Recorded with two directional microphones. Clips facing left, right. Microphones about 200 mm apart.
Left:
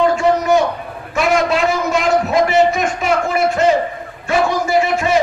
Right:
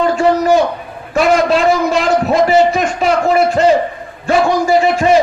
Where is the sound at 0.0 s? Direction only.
30° right (ahead or behind).